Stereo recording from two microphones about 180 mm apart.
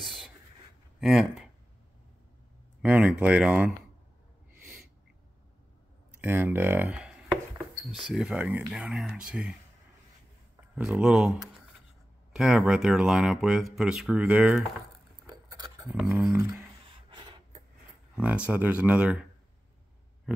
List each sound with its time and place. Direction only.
0.0 s writing: centre (ahead or behind)
0.9 s speech: centre (ahead or behind)
2.8 s speech: 5° right (ahead or behind)
6.2 s chopping: 10° right (ahead or behind)
10.8 s speech: 5° right (ahead or behind)
15.2 s a sound: 20° right (ahead or behind)
15.9 s speech: 5° right (ahead or behind)
16.3 s speech: 15° right (ahead or behind)
16.9 s filing: 25° right (ahead or behind)
18.1 s speech: 5° right (ahead or behind)